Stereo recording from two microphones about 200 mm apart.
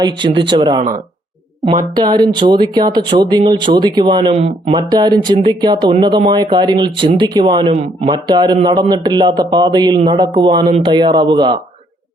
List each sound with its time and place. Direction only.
0.0 s speech: 25° right (ahead or behind)